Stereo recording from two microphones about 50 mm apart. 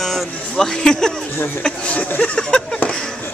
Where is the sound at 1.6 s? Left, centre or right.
Left.